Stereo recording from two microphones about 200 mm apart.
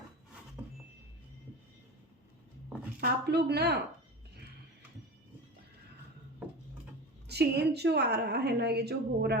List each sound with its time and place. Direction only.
0.6 s music: 10° right (ahead or behind)
3.0 s a woman's voice: 55° right (ahead or behind)
7.3 s a woman's voice: 55° right (ahead or behind)